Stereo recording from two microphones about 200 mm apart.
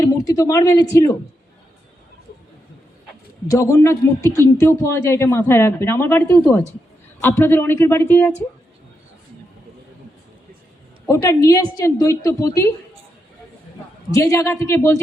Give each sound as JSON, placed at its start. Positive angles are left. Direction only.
{"t": 0.0, "sound": "speech", "side_deg": 15}
{"t": 3.5, "sound": "speech", "side_deg": 15}
{"t": 11.0, "sound": "speech", "side_deg": 15}
{"t": 14.2, "sound": "speech", "side_deg": 15}